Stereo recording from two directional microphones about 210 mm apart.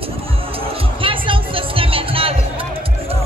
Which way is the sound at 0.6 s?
25° right (ahead or behind).